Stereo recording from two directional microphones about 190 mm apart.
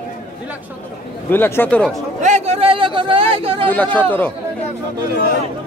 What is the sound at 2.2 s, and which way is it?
A man's voice, 35° right (ahead or behind).